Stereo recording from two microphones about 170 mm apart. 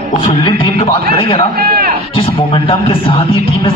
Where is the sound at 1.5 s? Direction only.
60° right (ahead or behind).